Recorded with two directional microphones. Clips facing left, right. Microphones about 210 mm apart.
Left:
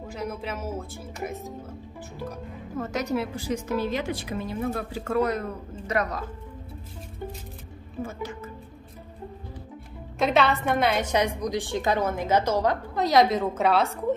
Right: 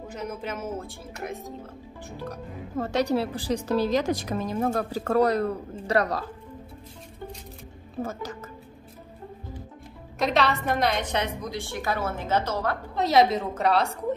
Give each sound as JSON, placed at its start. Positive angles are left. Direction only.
{"t": 0.3, "sound": "speech", "side_deg": 5}
{"t": 2.8, "sound": "a woman's voice", "side_deg": -30}
{"t": 8.0, "sound": "a woman's voice", "side_deg": -40}
{"t": 10.1, "sound": "a woman's voice", "side_deg": 0}
{"t": 12.9, "sound": "speech", "side_deg": 0}